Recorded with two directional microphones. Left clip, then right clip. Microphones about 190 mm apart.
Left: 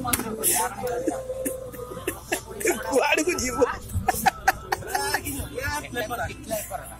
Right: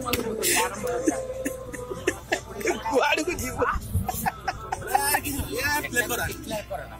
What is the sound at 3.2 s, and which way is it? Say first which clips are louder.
Speech: left 4 dB; 25° left (ahead or behind).